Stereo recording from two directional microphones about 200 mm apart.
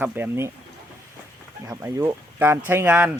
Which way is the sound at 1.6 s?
15° right (ahead or behind).